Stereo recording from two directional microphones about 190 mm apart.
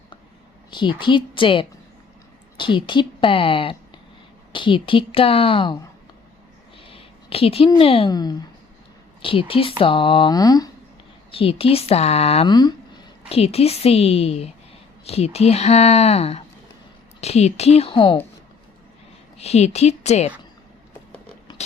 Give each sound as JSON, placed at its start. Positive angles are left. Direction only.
{"t": 0.7, "sound": "speech", "side_deg": 25}
{"t": 6.9, "sound": "speech", "side_deg": 30}
{"t": 11.3, "sound": "speech", "side_deg": 30}
{"t": 19.4, "sound": "speech", "side_deg": 35}